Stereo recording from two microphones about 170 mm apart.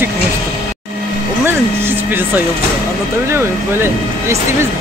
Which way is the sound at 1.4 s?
10° right (ahead or behind).